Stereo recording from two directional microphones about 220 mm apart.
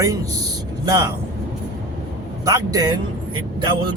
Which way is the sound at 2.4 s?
15° right (ahead or behind).